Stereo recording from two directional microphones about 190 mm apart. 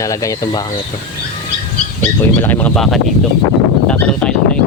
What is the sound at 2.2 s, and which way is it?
Speech, 10° left (ahead or behind).